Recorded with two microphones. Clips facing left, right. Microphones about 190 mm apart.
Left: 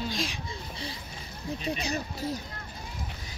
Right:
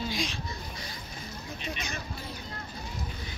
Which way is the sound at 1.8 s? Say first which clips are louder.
Left 6 dB; 35° left (ahead or behind).